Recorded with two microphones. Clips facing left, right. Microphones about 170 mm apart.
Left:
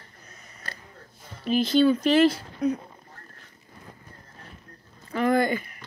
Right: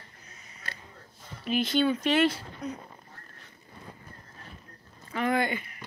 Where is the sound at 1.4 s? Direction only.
35° left (ahead or behind).